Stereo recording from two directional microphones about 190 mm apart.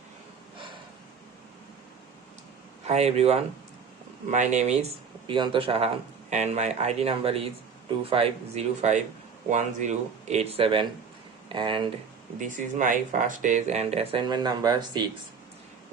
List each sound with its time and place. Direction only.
2.8 s speech: 35° right (ahead or behind)
12.4 s speech: 40° right (ahead or behind); by 15.0 s 20° right (ahead or behind)